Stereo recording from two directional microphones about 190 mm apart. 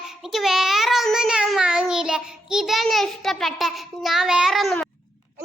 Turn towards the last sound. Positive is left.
turn(degrees=0)  # may be behind; listen again after turning